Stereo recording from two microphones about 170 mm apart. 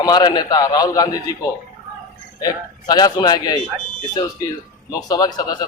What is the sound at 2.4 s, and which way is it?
A man's voice, 25° left (ahead or behind).